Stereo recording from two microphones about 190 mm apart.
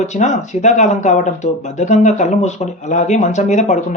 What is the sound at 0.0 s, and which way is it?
A man's voice, 40° left (ahead or behind).